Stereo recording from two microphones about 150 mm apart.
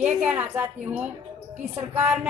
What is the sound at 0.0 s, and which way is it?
A woman's voice, 10° right (ahead or behind).